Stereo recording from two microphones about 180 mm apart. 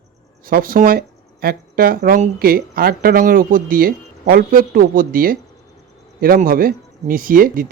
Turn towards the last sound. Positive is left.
turn(degrees=-50)  # may be behind; listen again after turning